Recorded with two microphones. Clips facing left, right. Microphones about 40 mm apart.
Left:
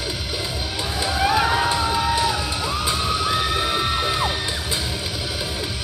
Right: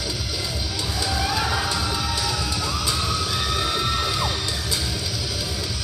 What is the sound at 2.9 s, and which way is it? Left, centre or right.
Music, left.